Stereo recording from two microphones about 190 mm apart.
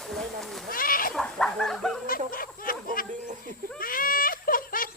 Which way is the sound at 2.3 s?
50° left (ahead or behind).